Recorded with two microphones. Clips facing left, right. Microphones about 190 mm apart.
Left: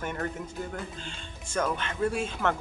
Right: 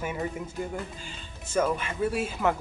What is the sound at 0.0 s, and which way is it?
Speech, 5° right (ahead or behind).